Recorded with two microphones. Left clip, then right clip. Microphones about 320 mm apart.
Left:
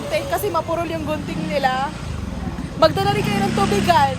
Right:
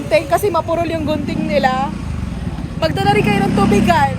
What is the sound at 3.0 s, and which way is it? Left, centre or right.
Speech, centre.